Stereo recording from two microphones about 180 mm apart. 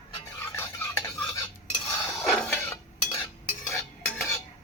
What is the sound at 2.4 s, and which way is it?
Dishes, 10° left (ahead or behind).